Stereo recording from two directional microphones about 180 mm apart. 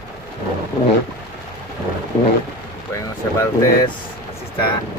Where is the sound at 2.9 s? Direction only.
15° left (ahead or behind).